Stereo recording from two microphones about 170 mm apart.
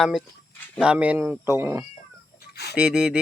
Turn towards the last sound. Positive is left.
turn(degrees=-5)  # may be behind; listen again after turning